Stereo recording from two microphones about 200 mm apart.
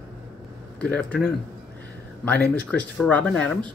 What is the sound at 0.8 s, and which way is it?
Speech, 5° left (ahead or behind).